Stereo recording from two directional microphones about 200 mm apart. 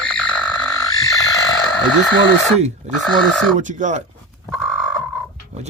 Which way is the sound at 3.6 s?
40° right (ahead or behind).